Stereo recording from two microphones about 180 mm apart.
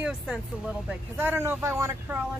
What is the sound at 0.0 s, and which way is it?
Speech, 5° right (ahead or behind).